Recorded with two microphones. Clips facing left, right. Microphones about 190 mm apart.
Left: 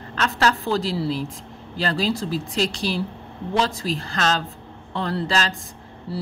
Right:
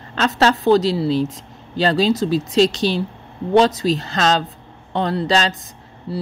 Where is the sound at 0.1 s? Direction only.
25° right (ahead or behind).